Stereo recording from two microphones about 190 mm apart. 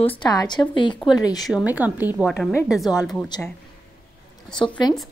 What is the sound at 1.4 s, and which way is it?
A woman's voice, 5° right (ahead or behind).